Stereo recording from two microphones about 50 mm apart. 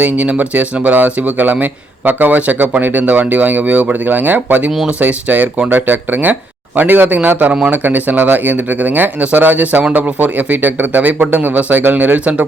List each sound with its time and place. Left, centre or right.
0.0 s speech: right